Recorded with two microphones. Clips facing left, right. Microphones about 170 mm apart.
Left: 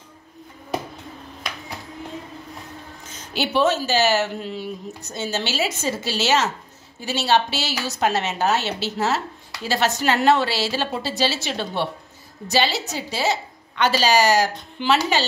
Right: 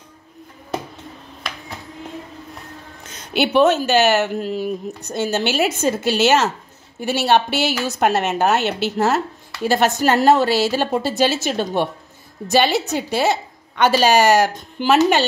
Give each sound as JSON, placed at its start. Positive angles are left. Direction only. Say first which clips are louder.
{"t": 3.1, "sound": "a woman's voice", "louder": "right 6 dB", "side_deg": -65}
{"t": 4.4, "sound": "a woman's voice", "louder": "right 7 dB", "side_deg": -45}
{"t": 5.0, "sound": "a woman's voice", "louder": "right 6 dB", "side_deg": -60}